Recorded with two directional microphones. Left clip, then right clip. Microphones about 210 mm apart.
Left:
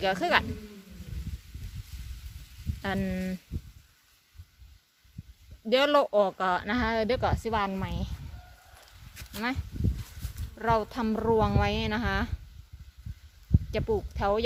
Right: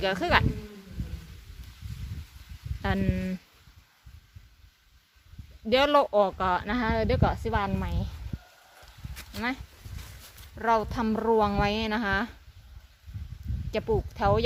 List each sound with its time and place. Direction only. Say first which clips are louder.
0.0 s speech: right 1 dB; centre (ahead or behind)
2.8 s speech: right 2 dB; centre (ahead or behind)
5.6 s speech: right 1 dB; centre (ahead or behind)
9.3 s speech: right 1 dB; 25° left (ahead or behind)
10.6 s speech: right 2 dB; centre (ahead or behind)
13.7 s speech: right 2 dB; centre (ahead or behind)